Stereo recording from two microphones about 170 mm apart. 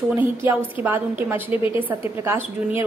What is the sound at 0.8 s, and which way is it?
A woman's voice, 10° right (ahead or behind).